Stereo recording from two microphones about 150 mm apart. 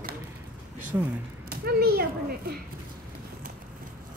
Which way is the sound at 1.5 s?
90° right.